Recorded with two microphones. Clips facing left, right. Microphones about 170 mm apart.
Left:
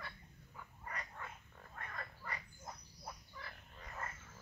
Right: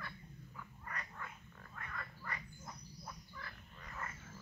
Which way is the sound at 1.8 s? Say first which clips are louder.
Even; 40° left (ahead or behind).